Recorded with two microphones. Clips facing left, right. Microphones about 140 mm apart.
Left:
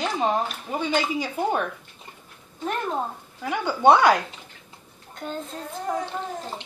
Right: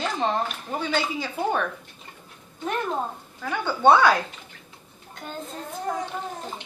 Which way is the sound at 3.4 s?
15° left (ahead or behind).